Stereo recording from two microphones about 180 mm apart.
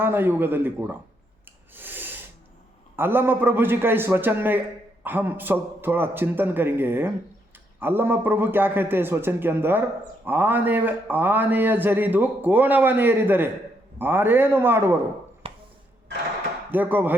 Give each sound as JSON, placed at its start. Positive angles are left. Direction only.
{"t": 0.0, "sound": "a man's voice", "side_deg": -10}
{"t": 1.7, "sound": "snort", "side_deg": -10}
{"t": 2.9, "sound": "a man's voice", "side_deg": -10}
{"t": 16.7, "sound": "a man's voice", "side_deg": -10}